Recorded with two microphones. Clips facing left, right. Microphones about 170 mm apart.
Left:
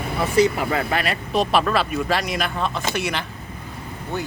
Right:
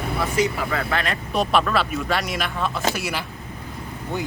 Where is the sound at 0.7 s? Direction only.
10° left (ahead or behind).